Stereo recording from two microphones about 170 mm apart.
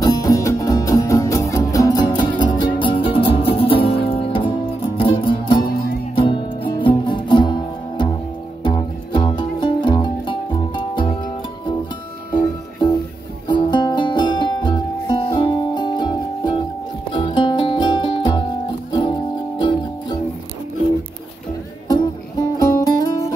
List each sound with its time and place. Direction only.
0.0 s music: 20° left (ahead or behind)
13.5 s music: 25° left (ahead or behind)
22.6 s music: 20° left (ahead or behind)